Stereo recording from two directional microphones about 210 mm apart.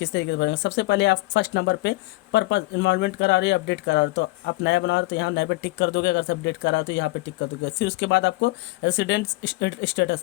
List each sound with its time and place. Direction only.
0.0 s speech: 55° left (ahead or behind)